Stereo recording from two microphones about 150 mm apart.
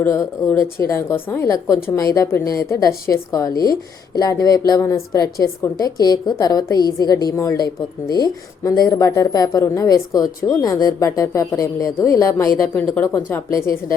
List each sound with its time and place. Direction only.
0.0 s speech: 15° left (ahead or behind)